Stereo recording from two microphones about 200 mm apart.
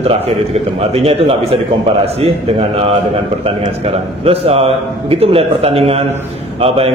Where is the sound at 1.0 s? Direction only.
30° right (ahead or behind).